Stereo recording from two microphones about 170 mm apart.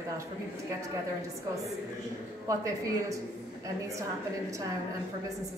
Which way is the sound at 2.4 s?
20° right (ahead or behind).